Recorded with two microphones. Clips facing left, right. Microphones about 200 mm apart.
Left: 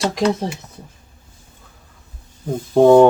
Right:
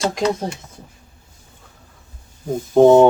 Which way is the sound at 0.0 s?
Centre (ahead or behind).